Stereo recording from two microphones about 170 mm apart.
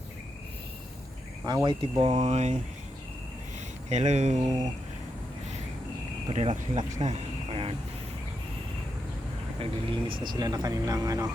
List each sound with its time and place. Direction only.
1.5 s speech: 25° right (ahead or behind)
3.8 s speech: 40° right (ahead or behind)
4.4 s speech: 20° right (ahead or behind)
6.2 s speech: 40° right (ahead or behind)
9.6 s speech: 30° right (ahead or behind)